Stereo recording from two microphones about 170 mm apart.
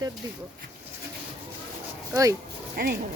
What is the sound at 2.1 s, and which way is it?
Speech, 20° right (ahead or behind).